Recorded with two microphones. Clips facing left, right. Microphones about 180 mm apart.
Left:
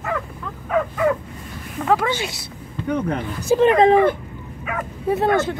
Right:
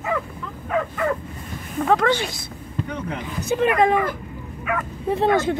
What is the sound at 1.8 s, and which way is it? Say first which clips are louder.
Speech: right 1 dB; 10° left (ahead or behind).